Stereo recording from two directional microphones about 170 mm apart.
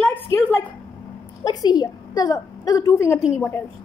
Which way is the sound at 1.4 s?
25° left (ahead or behind).